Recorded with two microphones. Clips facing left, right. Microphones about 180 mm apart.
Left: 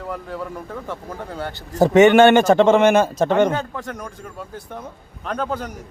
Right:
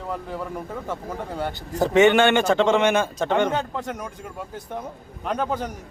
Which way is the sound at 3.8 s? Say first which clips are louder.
Right 1 dB; 20° right (ahead or behind).